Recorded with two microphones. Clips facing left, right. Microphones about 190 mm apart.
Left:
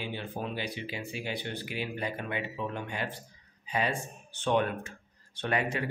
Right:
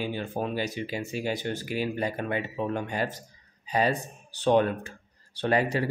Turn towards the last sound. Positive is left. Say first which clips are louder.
# right 6 dB
turn(degrees=-35)  # may be behind; listen again after turning